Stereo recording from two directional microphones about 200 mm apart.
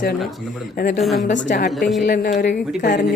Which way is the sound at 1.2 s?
40° left (ahead or behind).